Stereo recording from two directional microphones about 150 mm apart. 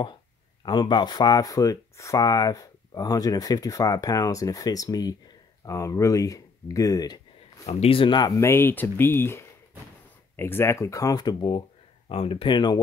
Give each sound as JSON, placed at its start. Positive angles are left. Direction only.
{"t": 0.7, "sound": "speech", "side_deg": 30}
{"t": 7.6, "sound": "speech", "side_deg": 40}
{"t": 8.4, "sound": "speech", "side_deg": 15}